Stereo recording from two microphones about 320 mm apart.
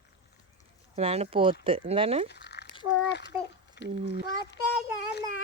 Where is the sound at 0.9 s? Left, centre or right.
Centre.